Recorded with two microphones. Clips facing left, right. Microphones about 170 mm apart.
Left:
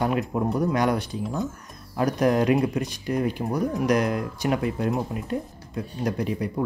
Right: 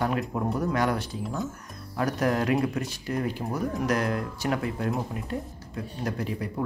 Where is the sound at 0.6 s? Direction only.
15° left (ahead or behind).